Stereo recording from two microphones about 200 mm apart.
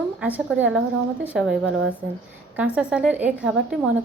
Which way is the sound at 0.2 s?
10° right (ahead or behind).